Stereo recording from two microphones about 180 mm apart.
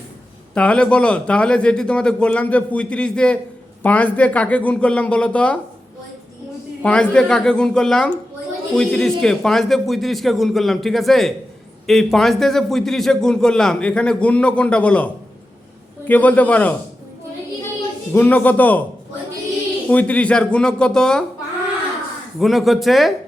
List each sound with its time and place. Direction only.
0.5 s a man's voice: 5° left (ahead or behind)
6.8 s a man's voice: 5° left (ahead or behind)
18.1 s speech: 10° left (ahead or behind)
19.9 s a man's voice: 10° left (ahead or behind)
22.4 s a man's voice: centre (ahead or behind)